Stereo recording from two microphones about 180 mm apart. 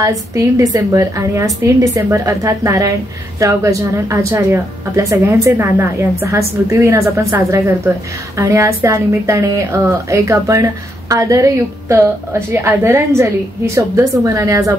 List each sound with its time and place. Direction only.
0.0 s a woman's voice: 20° right (ahead or behind)